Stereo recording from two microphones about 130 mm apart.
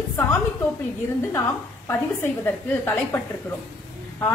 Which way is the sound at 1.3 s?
20° left (ahead or behind).